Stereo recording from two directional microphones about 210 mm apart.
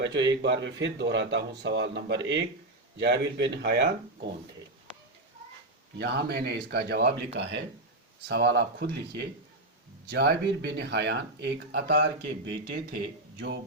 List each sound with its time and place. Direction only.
0.0 s speech: 60° right (ahead or behind)
6.0 s speech: 50° right (ahead or behind)